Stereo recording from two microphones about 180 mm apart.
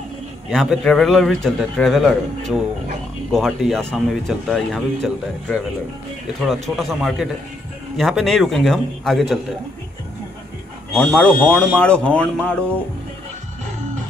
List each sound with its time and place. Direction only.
0.5 s speech: centre (ahead or behind)
10.9 s speech: 5° left (ahead or behind)